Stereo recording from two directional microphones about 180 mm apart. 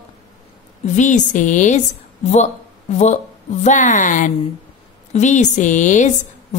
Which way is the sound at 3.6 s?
45° left (ahead or behind).